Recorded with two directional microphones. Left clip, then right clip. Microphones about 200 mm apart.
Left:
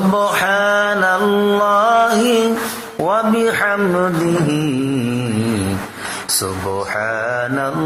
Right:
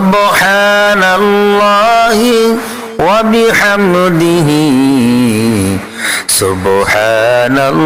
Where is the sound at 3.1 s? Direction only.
30° right (ahead or behind).